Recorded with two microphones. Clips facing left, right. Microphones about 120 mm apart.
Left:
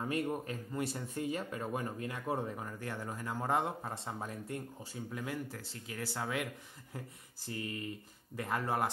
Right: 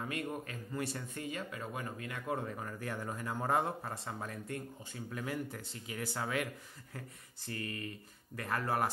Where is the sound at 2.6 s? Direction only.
5° left (ahead or behind).